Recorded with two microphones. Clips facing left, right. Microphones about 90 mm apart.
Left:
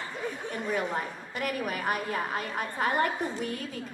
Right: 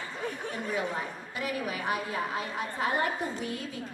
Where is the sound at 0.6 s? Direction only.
50° left (ahead or behind).